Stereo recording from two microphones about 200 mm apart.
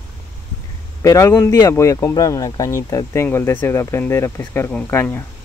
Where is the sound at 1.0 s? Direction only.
15° left (ahead or behind).